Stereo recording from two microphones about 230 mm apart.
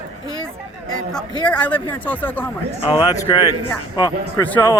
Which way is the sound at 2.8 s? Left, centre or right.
Centre.